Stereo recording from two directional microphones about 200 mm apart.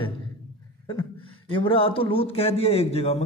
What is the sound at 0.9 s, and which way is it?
Speech, 25° left (ahead or behind).